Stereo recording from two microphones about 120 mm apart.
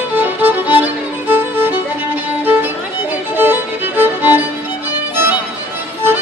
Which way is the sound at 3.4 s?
15° right (ahead or behind).